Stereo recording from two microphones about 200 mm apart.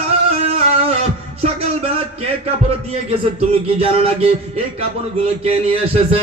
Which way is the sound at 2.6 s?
30° right (ahead or behind).